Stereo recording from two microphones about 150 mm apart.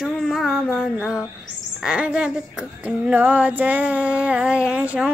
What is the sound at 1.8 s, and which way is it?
Speech, 5° right (ahead or behind).